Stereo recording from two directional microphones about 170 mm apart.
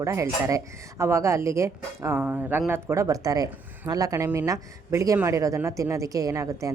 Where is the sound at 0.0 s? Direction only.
20° right (ahead or behind).